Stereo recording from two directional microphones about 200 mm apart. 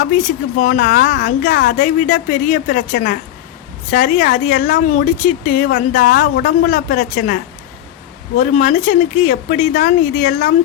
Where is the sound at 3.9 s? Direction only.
45° left (ahead or behind).